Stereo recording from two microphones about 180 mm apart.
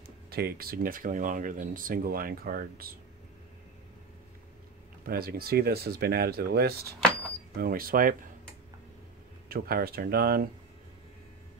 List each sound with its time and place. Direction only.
0.0 s speech: 60° right (ahead or behind)
5.0 s speech: 55° right (ahead or behind)
9.5 s speech: 55° right (ahead or behind)